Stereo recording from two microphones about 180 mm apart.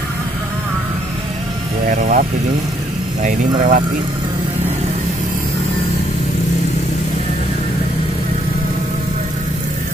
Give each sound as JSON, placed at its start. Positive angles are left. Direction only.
{"t": 1.9, "sound": "speech", "side_deg": -50}